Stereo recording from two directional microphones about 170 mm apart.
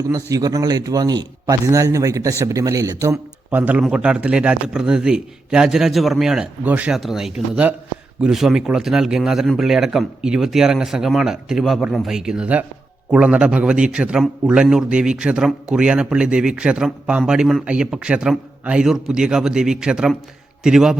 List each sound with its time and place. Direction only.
0.0 s a man's voice: 20° right (ahead or behind); by 21.0 s 5° right (ahead or behind)